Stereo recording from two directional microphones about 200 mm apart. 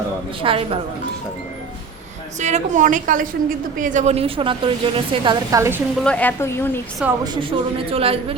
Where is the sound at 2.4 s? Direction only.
35° right (ahead or behind); by 5.8 s 15° right (ahead or behind).